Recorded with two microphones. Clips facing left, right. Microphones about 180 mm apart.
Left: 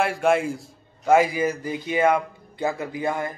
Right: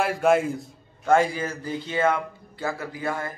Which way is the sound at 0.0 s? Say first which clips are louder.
Even; centre (ahead or behind).